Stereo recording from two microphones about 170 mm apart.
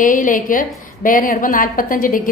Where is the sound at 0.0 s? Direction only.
50° left (ahead or behind).